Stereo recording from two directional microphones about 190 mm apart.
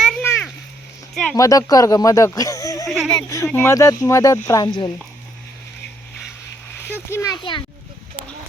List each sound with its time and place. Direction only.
0.2 s a sound: 10° left (ahead or behind)
1.4 s speech: 20° left (ahead or behind)
2.9 s speech: centre (ahead or behind)
3.2 s speech: 15° left (ahead or behind)
6.7 s a child's voice: 15° left (ahead or behind)